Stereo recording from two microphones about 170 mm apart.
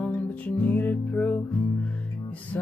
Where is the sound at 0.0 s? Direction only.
10° left (ahead or behind).